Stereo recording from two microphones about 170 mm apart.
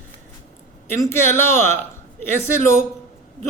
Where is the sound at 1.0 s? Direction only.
15° left (ahead or behind).